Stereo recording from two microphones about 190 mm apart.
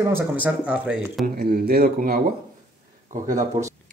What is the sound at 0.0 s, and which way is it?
Speech, 10° right (ahead or behind).